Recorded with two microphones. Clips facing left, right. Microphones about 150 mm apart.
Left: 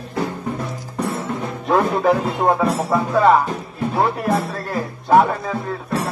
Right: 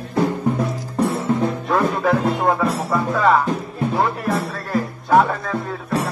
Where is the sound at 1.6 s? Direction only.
25° left (ahead or behind).